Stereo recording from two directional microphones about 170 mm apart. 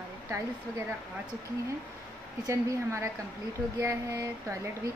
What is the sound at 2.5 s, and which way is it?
Speech, 15° right (ahead or behind).